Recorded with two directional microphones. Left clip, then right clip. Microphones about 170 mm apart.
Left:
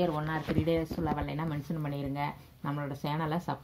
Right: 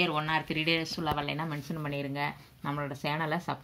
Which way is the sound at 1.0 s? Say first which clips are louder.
Right 2 dB; 15° left (ahead or behind).